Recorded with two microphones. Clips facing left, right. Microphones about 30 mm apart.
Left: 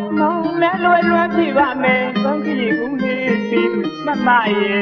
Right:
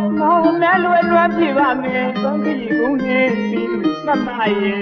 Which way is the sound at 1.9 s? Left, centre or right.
Centre.